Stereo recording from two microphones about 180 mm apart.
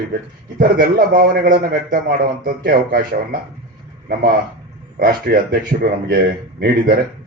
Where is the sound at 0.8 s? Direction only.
55° right (ahead or behind).